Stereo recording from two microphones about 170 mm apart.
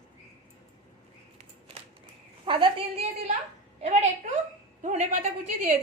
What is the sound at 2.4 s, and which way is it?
Speech, 30° right (ahead or behind).